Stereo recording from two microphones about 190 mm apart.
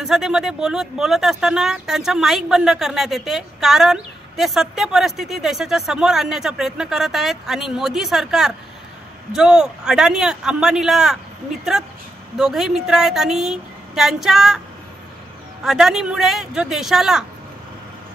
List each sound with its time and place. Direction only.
0.0 s speech: 5° right (ahead or behind)
12.4 s speech: centre (ahead or behind)
15.6 s speech: centre (ahead or behind)